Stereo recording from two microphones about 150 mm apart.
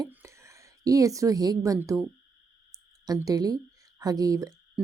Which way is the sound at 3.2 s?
25° right (ahead or behind).